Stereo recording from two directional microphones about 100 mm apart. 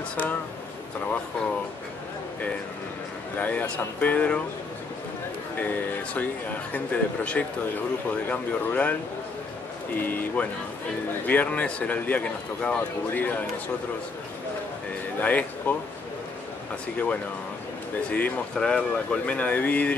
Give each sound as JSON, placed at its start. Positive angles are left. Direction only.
{"t": 0.1, "sound": "speech", "side_deg": 15}
{"t": 3.3, "sound": "a man's voice", "side_deg": 15}
{"t": 6.7, "sound": "a man's voice", "side_deg": 15}
{"t": 9.9, "sound": "a man's voice", "side_deg": 20}
{"t": 15.1, "sound": "speech", "side_deg": 15}
{"t": 18.1, "sound": "a man's voice", "side_deg": 10}